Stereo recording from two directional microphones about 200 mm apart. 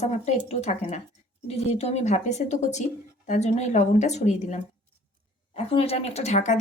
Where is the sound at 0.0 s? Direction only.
35° left (ahead or behind).